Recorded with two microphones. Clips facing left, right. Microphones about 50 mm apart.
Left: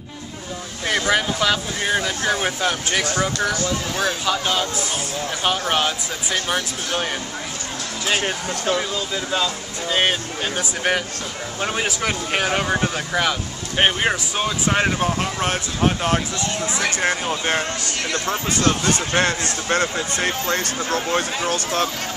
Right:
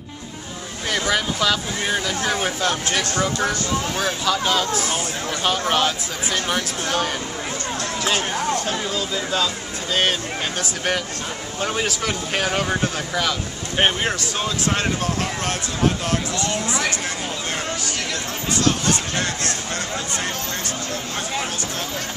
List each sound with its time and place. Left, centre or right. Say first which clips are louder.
0.8 s speech: left 2 dB; centre
3.3 s speech: even; centre
4.3 s speech: right 1 dB; centre
8.6 s speech: left 2 dB; centre; by 16.2 s left
16.3 s speech: right 1 dB; left
17.0 s speech: left 6 dB; left
19.7 s speech: left 6 dB; left